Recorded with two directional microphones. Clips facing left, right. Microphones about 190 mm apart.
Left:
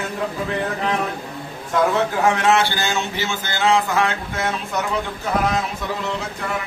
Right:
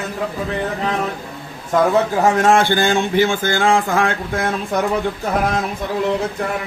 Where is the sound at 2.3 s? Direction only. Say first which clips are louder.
Right 4 dB; 45° right (ahead or behind).